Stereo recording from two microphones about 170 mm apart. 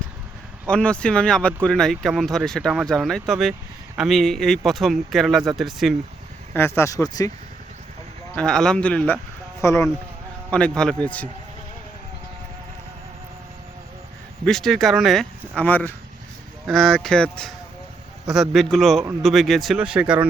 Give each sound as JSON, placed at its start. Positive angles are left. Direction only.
{"t": 0.7, "sound": "speech", "side_deg": 5}
{"t": 6.5, "sound": "speech", "side_deg": 15}
{"t": 8.4, "sound": "speech", "side_deg": 5}
{"t": 10.5, "sound": "a man's voice", "side_deg": 5}
{"t": 14.4, "sound": "speech", "side_deg": 0}